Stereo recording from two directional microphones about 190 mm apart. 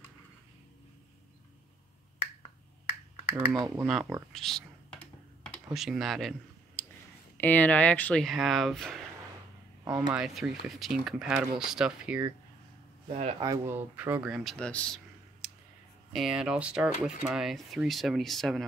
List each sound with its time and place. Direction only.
3.5 s speech: 20° right (ahead or behind)
3.8 s speech: centre (ahead or behind)
4.3 s computer keyboard: centre (ahead or behind)
6.8 s a sound: 10° left (ahead or behind)
7.3 s speech: 10° left (ahead or behind)
10.1 s speech: 5° right (ahead or behind)
13.1 s speech: 35° right (ahead or behind)
13.4 s speech: 15° right (ahead or behind); by 15.0 s 5° left (ahead or behind)
15.4 s clicking: centre (ahead or behind)
16.1 s speech: centre (ahead or behind)